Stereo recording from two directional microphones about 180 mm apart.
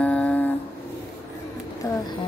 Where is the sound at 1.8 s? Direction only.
20° left (ahead or behind).